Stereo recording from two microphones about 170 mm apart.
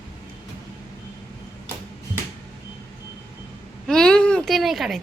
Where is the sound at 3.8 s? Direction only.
5° left (ahead or behind).